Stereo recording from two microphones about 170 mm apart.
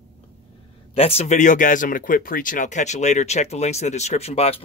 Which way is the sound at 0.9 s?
35° left (ahead or behind).